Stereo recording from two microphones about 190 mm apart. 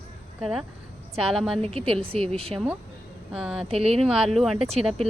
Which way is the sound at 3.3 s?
5° right (ahead or behind).